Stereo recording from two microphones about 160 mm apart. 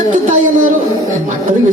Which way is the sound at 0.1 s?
50° right (ahead or behind).